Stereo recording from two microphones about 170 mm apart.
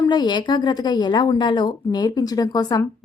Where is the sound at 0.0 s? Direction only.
25° left (ahead or behind).